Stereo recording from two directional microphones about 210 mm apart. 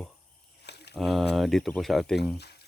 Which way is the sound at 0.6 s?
50° left (ahead or behind).